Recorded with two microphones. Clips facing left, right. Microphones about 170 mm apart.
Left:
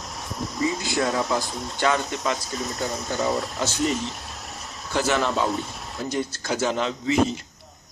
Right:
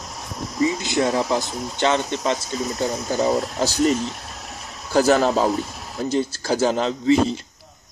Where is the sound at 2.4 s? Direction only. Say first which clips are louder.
Right 5 dB; centre (ahead or behind).